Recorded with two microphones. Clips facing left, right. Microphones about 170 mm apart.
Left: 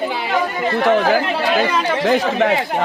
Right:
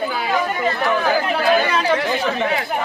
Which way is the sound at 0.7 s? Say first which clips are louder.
Left 5 dB; 90° left.